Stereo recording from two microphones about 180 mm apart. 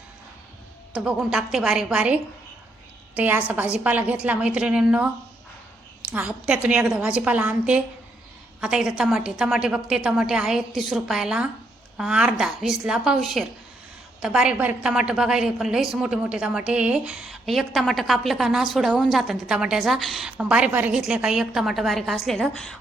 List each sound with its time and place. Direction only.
0.9 s a woman's voice: 5° right (ahead or behind)